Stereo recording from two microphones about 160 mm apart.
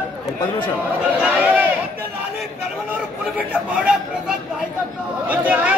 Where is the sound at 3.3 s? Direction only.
10° right (ahead or behind).